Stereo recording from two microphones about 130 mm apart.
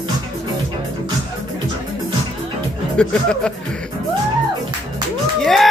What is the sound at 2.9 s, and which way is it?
Music, 5° left (ahead or behind).